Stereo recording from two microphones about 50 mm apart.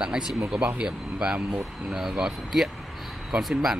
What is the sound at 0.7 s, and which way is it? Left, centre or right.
Speech, centre.